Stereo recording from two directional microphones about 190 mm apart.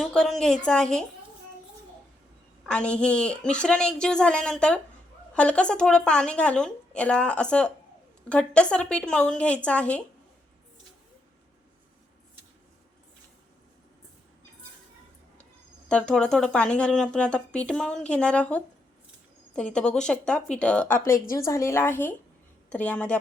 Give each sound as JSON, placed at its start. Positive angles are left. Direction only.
{"t": 0.0, "sound": "speech", "side_deg": 0}
{"t": 2.6, "sound": "speech", "side_deg": 5}
{"t": 15.9, "sound": "speech", "side_deg": 5}
{"t": 21.0, "sound": "a woman's voice", "side_deg": 45}
{"t": 21.3, "sound": "a woman's voice", "side_deg": 15}